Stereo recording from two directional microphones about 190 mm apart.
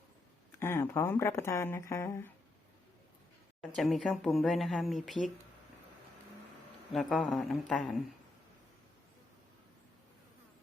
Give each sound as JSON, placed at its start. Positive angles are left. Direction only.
{"t": 0.6, "sound": "speech", "side_deg": 10}
{"t": 3.8, "sound": "speech", "side_deg": 0}
{"t": 6.9, "sound": "speech", "side_deg": 0}